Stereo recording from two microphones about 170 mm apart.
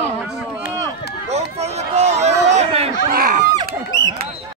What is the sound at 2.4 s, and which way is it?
Chatter, 40° right (ahead or behind).